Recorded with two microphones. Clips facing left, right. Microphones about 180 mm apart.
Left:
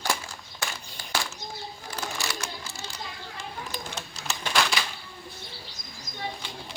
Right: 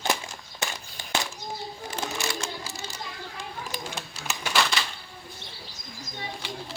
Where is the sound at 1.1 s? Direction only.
20° right (ahead or behind).